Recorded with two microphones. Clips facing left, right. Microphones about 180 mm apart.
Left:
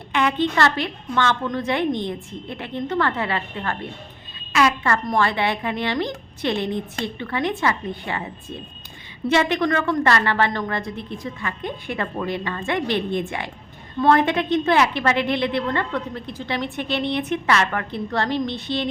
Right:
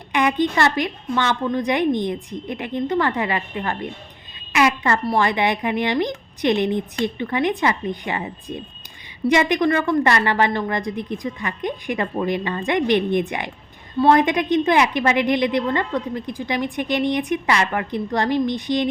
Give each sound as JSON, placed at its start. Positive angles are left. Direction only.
{"t": 0.1, "sound": "a woman's voice", "side_deg": -15}
{"t": 4.5, "sound": "a sound", "side_deg": -15}
{"t": 5.0, "sound": "a woman's voice", "side_deg": -15}